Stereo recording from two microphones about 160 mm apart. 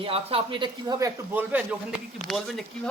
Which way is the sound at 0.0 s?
35° right (ahead or behind).